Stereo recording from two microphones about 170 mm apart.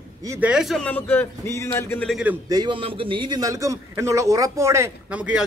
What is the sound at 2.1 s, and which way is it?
Speech, 5° right (ahead or behind).